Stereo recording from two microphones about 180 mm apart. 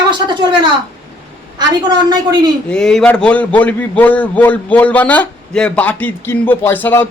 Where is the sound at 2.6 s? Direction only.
5° left (ahead or behind).